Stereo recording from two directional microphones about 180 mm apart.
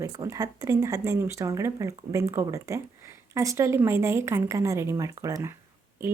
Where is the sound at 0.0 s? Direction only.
20° right (ahead or behind).